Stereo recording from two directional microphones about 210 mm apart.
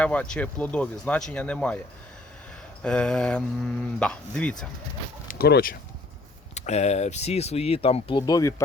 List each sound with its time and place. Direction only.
0.0 s speech: 5° left (ahead or behind)
2.8 s speech: 5° left (ahead or behind)
5.3 s speech: 45° left (ahead or behind)
6.5 s speech: 30° left (ahead or behind); by 8.6 s 15° left (ahead or behind)